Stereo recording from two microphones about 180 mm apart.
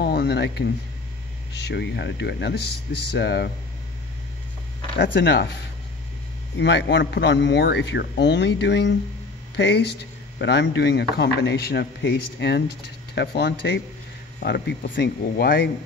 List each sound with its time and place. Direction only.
0.0 s a man's voice: 65° left (ahead or behind)
4.9 s speech: 70° left (ahead or behind)
6.6 s a man's voice: 75° left (ahead or behind); by 15.7 s 55° left (ahead or behind)